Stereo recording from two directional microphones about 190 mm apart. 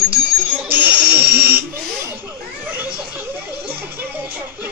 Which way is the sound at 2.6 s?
10° right (ahead or behind).